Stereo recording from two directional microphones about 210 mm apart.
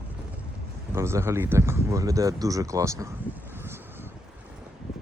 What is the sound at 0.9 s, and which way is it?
Speech, 10° right (ahead or behind).